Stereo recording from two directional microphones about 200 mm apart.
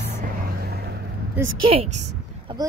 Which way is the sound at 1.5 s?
30° right (ahead or behind).